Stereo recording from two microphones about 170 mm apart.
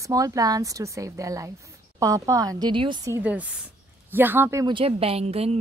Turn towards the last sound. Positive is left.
turn(degrees=-35)  # may be behind; listen again after turning